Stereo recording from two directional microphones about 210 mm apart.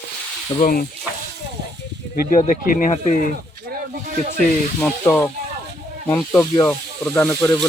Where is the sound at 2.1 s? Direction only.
45° left (ahead or behind).